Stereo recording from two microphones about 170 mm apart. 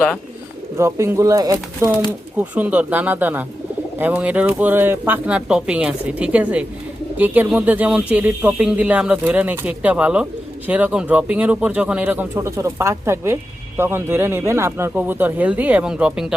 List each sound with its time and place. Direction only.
0.8 s speech: 15° right (ahead or behind)
2.4 s speech: 10° right (ahead or behind)